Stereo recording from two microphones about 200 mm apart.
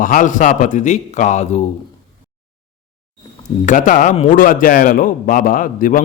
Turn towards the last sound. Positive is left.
turn(degrees=45)  # may be behind; listen again after turning